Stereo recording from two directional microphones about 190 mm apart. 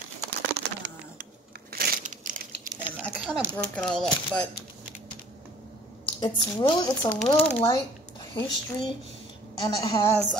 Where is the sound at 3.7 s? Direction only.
5° left (ahead or behind).